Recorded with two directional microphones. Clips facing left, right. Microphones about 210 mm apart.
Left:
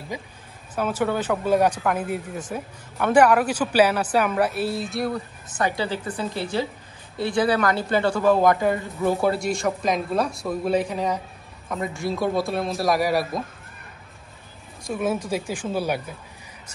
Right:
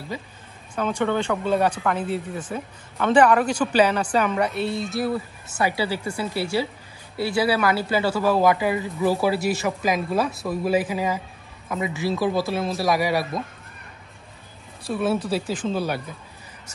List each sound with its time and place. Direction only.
0.1 s a woman's voice: 15° left (ahead or behind)
14.9 s speech: 10° left (ahead or behind)